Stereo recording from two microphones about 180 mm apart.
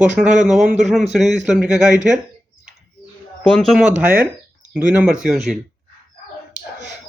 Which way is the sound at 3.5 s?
Centre (ahead or behind).